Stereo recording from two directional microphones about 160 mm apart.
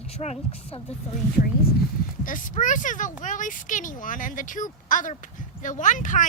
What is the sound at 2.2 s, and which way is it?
Speech, 55° left (ahead or behind).